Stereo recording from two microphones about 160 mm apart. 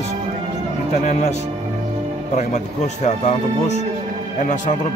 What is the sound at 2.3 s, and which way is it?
Speech, 45° left (ahead or behind).